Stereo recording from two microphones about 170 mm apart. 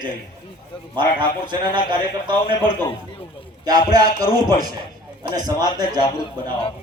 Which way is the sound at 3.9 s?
25° right (ahead or behind).